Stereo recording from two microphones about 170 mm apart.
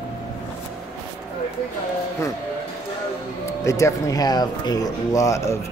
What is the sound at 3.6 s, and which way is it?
Speech, 20° left (ahead or behind).